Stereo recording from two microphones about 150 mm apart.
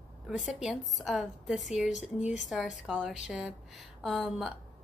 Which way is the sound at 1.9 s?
50° left (ahead or behind).